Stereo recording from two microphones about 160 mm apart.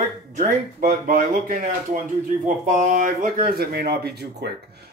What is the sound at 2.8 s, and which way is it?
Speech, 55° right (ahead or behind).